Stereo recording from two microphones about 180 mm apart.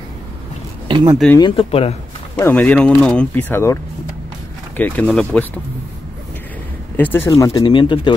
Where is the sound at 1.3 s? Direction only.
30° left (ahead or behind).